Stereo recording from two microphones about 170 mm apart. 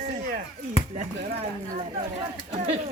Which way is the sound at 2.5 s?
35° right (ahead or behind).